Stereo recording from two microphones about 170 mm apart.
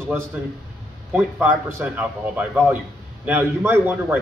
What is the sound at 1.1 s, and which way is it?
A man's voice, 10° right (ahead or behind).